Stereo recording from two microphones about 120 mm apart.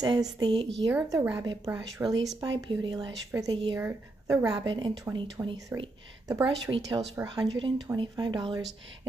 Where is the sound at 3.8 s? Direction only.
20° right (ahead or behind).